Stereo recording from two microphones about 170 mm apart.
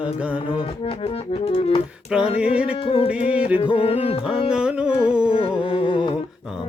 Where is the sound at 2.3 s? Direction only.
5° right (ahead or behind).